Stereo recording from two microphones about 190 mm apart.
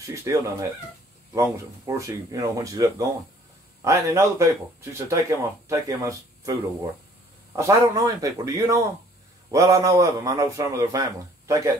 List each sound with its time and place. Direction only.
0.0 s a man's voice: 15° right (ahead or behind)
2.0 s a man's voice: 15° right (ahead or behind)